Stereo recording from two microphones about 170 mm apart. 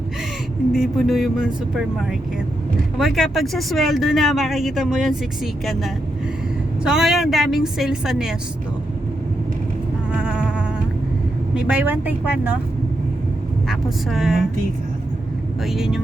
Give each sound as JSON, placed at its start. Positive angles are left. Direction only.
{"t": 0.7, "sound": "speech", "side_deg": 0}
{"t": 3.0, "sound": "speech", "side_deg": 0}
{"t": 10.1, "sound": "insect", "side_deg": -5}
{"t": 11.5, "sound": "a woman's voice", "side_deg": -10}
{"t": 13.7, "sound": "speech", "side_deg": 0}
{"t": 15.6, "sound": "speech", "side_deg": 0}